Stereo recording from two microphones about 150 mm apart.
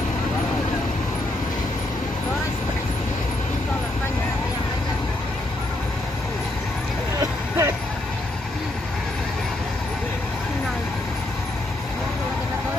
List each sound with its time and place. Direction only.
7.2 s vehicle: 20° right (ahead or behind)